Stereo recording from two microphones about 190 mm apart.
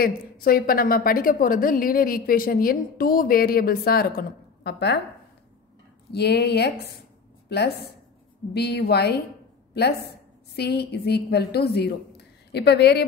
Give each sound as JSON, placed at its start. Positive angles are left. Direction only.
{"t": 0.0, "sound": "a woman's voice", "side_deg": 50}
{"t": 6.1, "sound": "a woman's voice", "side_deg": 60}